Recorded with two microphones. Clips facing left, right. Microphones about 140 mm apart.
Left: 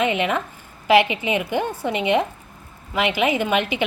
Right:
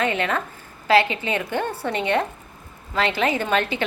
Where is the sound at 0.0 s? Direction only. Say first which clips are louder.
Left 2 dB; 15° left (ahead or behind).